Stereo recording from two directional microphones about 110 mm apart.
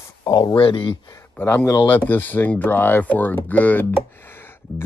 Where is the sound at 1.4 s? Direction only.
20° left (ahead or behind).